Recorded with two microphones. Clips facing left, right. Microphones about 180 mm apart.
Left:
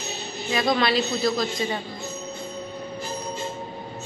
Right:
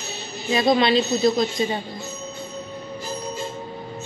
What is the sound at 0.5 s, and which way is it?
Speech, 25° right (ahead or behind).